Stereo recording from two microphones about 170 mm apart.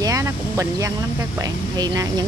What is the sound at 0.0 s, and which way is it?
Vehicle, 20° right (ahead or behind).